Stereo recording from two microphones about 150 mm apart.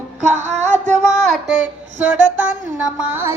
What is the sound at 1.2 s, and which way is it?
Child singing, centre (ahead or behind).